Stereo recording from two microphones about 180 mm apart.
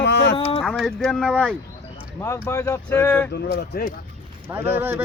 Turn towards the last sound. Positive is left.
turn(degrees=-10)  # may be behind; listen again after turning